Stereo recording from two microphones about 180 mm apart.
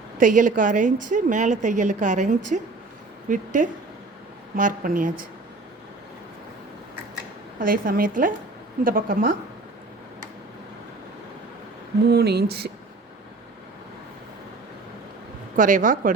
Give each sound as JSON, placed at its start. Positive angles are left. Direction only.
{"t": 0.2, "sound": "a woman's voice", "side_deg": -45}
{"t": 7.6, "sound": "a woman's voice", "side_deg": -50}
{"t": 12.0, "sound": "speech", "side_deg": -65}
{"t": 15.5, "sound": "a woman's voice", "side_deg": -45}